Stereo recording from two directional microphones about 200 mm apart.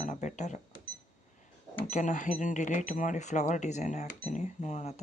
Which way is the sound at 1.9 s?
40° left (ahead or behind).